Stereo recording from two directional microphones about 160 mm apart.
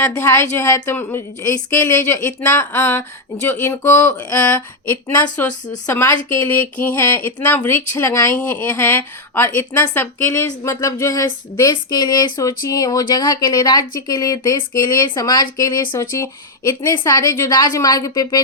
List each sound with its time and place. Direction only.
0.0 s speech: 15° left (ahead or behind)